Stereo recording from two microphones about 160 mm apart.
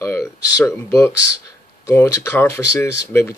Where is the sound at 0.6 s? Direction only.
15° left (ahead or behind).